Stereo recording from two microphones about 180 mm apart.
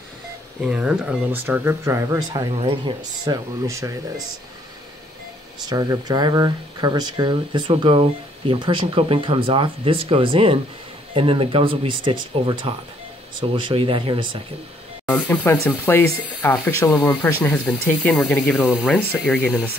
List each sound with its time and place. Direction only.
0.7 s speech: 5° right (ahead or behind)
2.6 s speech: 25° right (ahead or behind)
5.7 s speech: 20° right (ahead or behind)
15.0 s speech: 5° left (ahead or behind)
17.1 s speech: 5° left (ahead or behind)
19.4 s speech: 5° right (ahead or behind)